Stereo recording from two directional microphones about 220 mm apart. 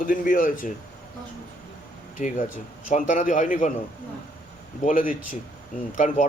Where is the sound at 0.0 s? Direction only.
40° left (ahead or behind).